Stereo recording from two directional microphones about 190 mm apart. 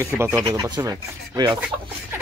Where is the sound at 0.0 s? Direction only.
15° right (ahead or behind).